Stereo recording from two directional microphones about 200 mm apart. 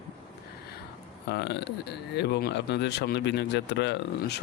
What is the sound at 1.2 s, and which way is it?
Speech, 55° left (ahead or behind).